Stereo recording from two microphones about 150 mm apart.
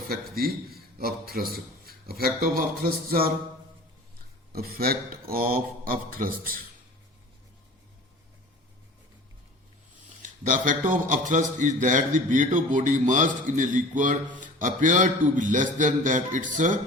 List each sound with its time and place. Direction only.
0.1 s a man's voice: 85° right
4.5 s speech: 85° right
10.2 s a man's voice: 60° right (ahead or behind)